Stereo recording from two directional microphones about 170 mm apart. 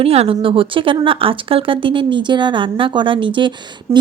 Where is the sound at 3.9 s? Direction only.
15° right (ahead or behind).